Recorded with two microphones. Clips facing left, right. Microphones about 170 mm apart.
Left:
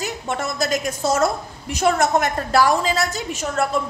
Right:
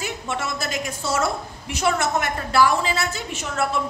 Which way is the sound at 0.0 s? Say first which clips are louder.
Left 2 dB; 40° left (ahead or behind).